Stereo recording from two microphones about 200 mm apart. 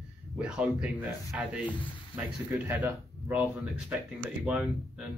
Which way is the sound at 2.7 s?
10° right (ahead or behind).